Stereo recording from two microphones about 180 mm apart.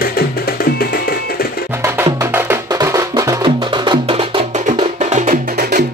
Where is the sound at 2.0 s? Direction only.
15° right (ahead or behind); by 5.6 s 45° right (ahead or behind).